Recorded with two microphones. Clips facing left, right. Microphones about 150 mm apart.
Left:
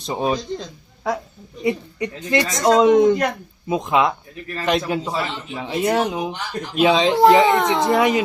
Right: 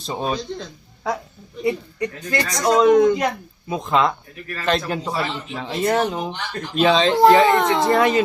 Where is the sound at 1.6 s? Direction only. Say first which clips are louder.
Even; 20° left (ahead or behind).